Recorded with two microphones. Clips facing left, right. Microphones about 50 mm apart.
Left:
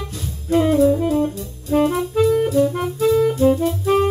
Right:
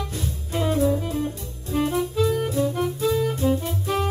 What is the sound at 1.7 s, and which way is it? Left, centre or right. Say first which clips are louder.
Music: left 6 dB; left.